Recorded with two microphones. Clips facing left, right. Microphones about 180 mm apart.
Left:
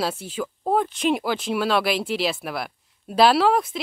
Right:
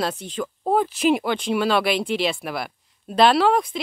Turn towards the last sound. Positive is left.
turn(degrees=0)  # may be behind; listen again after turning